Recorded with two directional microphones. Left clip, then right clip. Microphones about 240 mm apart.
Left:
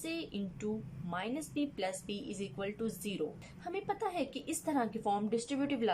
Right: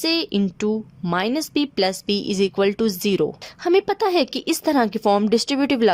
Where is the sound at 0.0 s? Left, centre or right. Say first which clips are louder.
Right 19 dB; right.